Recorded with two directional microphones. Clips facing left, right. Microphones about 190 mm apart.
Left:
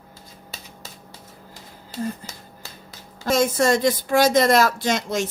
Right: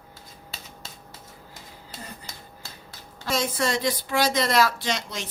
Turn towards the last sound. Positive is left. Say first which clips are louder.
# left 7 dB
turn(degrees=45)  # may be behind; listen again after turning